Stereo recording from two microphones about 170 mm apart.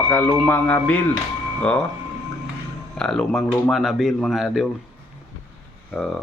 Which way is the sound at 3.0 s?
5° left (ahead or behind).